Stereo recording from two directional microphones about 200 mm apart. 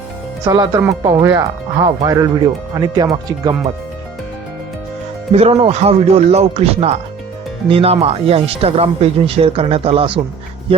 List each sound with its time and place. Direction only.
0.4 s speech: 20° right (ahead or behind)
5.3 s speech: 30° right (ahead or behind)